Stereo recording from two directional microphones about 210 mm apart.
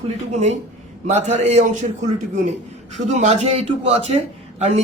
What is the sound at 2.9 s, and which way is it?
A man's voice, 30° right (ahead or behind).